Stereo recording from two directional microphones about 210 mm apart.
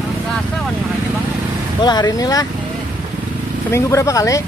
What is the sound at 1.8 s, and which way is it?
Speech, 20° left (ahead or behind).